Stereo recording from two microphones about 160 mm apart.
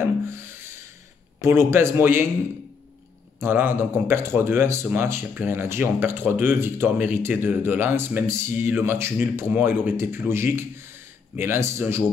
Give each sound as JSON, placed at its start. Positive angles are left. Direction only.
{"t": 0.0, "sound": "rub", "side_deg": -15}
{"t": 1.4, "sound": "a man's voice", "side_deg": -15}
{"t": 3.3, "sound": "a man's voice", "side_deg": -15}